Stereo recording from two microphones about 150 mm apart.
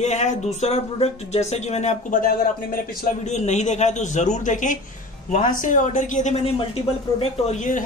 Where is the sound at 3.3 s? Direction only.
50° left (ahead or behind).